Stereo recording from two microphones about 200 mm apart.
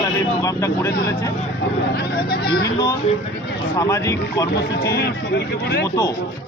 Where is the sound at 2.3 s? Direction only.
50° left (ahead or behind).